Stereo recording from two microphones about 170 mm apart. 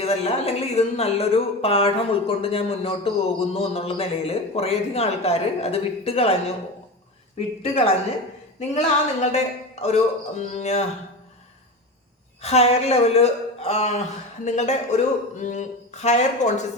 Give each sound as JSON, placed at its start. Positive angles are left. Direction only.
{"t": 0.0, "sound": "speech", "side_deg": 35}
{"t": 7.3, "sound": "speech", "side_deg": 35}
{"t": 9.2, "sound": "speech", "side_deg": 40}
{"t": 12.4, "sound": "speech", "side_deg": 40}